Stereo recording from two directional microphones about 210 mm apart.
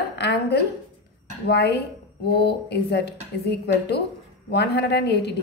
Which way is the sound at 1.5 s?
50° left (ahead or behind).